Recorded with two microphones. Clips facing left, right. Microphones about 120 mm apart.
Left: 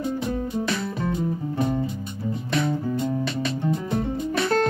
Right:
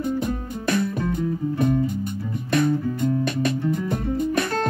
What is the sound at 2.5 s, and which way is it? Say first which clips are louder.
Music: right 4 dB; 50° right (ahead or behind).